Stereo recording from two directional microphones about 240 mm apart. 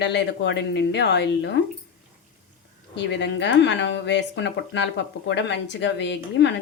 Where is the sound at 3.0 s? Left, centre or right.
Left.